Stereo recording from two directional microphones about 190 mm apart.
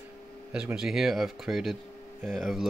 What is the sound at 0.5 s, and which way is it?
Speech, 5° right (ahead or behind).